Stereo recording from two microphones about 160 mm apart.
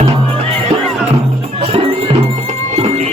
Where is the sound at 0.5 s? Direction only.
5° left (ahead or behind).